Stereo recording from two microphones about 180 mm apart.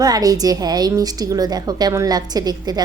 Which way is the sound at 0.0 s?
20° right (ahead or behind).